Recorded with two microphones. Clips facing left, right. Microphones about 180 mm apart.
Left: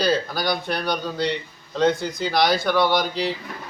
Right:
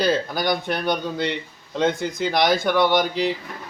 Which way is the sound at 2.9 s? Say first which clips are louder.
Right 2 dB; 50° right (ahead or behind).